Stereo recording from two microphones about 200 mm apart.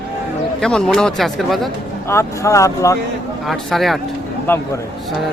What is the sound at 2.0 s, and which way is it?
Speech, 15° left (ahead or behind).